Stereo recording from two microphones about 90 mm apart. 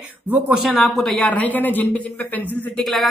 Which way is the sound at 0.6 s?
Centre (ahead or behind).